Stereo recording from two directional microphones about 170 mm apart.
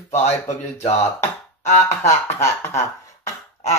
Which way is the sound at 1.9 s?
15° left (ahead or behind).